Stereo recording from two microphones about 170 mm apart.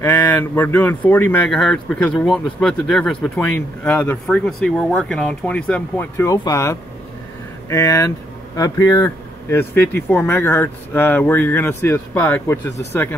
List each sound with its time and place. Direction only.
0.0 s speech: 15° left (ahead or behind)